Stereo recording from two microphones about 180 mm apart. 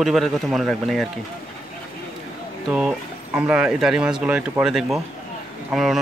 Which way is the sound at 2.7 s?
5° right (ahead or behind).